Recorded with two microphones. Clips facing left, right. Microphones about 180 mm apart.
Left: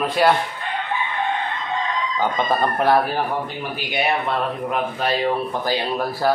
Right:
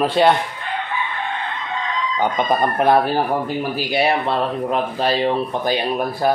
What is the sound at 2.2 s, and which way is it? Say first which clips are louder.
Speech: right 2 dB; 15° right (ahead or behind).